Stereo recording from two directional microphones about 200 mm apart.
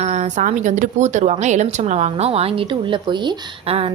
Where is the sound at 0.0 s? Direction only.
35° right (ahead or behind).